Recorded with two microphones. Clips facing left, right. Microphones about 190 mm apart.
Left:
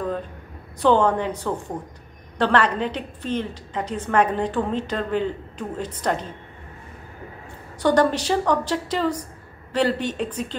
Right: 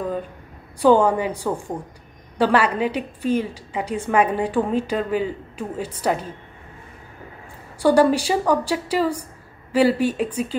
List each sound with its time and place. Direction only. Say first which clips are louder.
0.7 s a woman's voice: right 3 dB; 10° right (ahead or behind)
7.8 s a woman's voice: right 3 dB; 10° right (ahead or behind)